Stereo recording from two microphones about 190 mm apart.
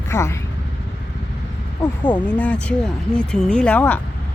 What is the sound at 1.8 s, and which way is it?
Speech, 25° left (ahead or behind).